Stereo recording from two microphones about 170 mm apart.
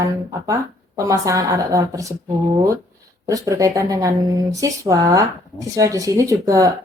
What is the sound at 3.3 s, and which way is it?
Speech, 20° right (ahead or behind).